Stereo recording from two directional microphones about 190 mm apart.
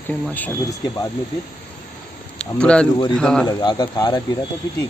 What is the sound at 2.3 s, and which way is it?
Speech, 5° left (ahead or behind).